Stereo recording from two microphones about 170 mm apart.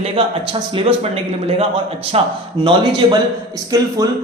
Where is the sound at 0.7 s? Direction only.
35° right (ahead or behind).